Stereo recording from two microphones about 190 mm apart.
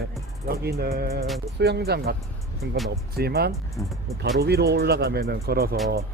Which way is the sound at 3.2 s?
55° right (ahead or behind).